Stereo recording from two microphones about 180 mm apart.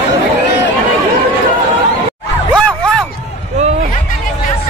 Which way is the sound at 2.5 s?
5° left (ahead or behind).